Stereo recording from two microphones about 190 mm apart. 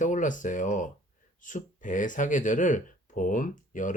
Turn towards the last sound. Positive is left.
turn(degrees=45)  # may be behind; listen again after turning